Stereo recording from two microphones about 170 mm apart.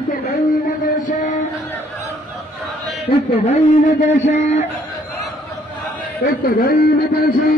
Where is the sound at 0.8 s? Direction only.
45° left (ahead or behind).